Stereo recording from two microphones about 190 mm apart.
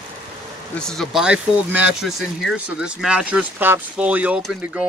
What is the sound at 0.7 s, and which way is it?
Speech, 5° left (ahead or behind).